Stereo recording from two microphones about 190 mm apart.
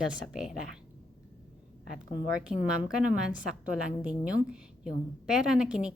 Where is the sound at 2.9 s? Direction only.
5° right (ahead or behind).